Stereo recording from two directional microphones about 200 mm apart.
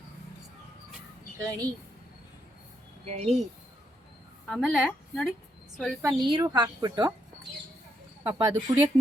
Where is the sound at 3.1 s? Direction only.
35° right (ahead or behind).